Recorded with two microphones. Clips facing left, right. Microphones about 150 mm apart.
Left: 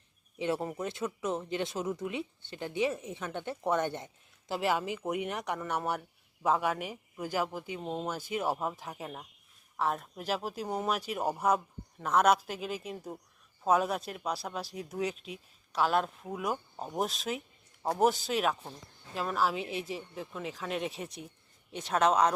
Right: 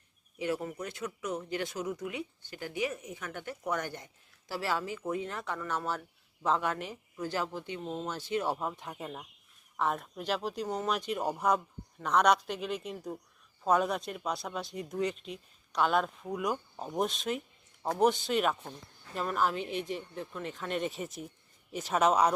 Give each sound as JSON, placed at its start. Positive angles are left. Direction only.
{"t": 0.3, "sound": "speech", "side_deg": 25}